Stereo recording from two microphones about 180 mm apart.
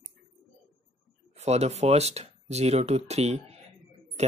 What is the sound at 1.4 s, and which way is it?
Speech, 35° right (ahead or behind).